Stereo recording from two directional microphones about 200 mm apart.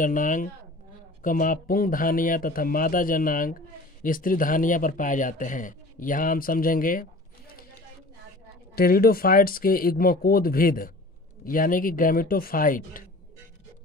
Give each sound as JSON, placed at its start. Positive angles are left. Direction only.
{"t": 0.0, "sound": "a man's voice", "side_deg": 40}
{"t": 8.7, "sound": "speech", "side_deg": 50}